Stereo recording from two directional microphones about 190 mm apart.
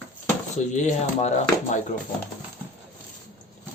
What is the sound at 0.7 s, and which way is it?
Speech, 40° left (ahead or behind).